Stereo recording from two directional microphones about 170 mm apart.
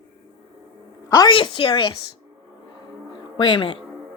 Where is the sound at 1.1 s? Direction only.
30° left (ahead or behind).